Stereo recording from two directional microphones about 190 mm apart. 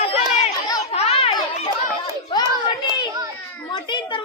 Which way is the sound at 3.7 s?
25° left (ahead or behind).